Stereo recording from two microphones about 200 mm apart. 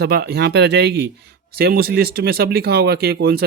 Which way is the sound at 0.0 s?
55° right (ahead or behind).